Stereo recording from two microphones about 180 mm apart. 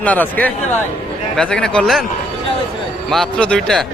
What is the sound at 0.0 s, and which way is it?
Speech, 10° left (ahead or behind).